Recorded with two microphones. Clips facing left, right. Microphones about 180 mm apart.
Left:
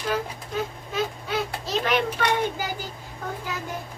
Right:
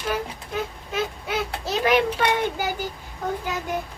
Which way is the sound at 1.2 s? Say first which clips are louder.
Right 1 dB; 15° right (ahead or behind).